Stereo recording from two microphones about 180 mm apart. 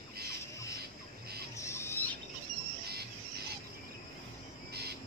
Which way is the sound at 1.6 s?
15° left (ahead or behind).